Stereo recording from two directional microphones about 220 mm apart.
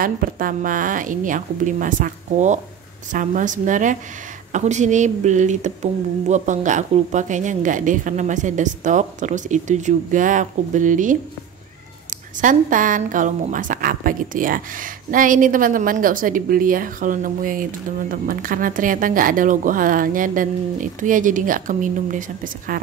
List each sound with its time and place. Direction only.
0.0 s a woman's voice: 40° right (ahead or behind)
12.4 s a woman's voice: 35° right (ahead or behind)